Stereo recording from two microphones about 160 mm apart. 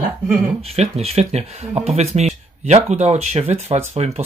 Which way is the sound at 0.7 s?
40° right (ahead or behind).